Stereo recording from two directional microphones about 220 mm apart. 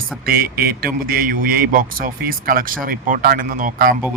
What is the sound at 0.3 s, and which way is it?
A man's voice, 45° right (ahead or behind).